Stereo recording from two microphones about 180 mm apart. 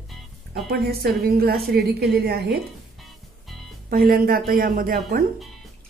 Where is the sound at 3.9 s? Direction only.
55° right (ahead or behind).